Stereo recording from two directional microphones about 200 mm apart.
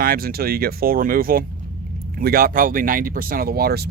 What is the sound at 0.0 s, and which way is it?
Speech, 50° right (ahead or behind).